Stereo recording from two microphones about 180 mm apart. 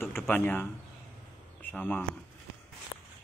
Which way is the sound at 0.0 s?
10° left (ahead or behind).